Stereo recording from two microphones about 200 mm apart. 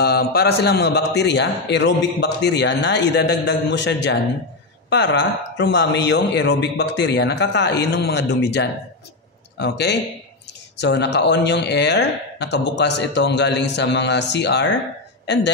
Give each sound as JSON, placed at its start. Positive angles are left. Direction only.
{"t": 0.0, "sound": "a man's voice", "side_deg": 50}